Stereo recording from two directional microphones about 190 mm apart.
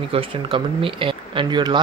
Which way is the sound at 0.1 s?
30° right (ahead or behind).